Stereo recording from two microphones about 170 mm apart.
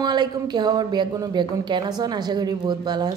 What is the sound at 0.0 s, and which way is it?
A woman's voice, 25° right (ahead or behind).